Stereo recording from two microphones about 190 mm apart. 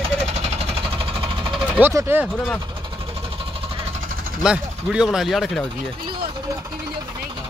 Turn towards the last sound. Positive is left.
turn(degrees=0)  # may be behind; listen again after turning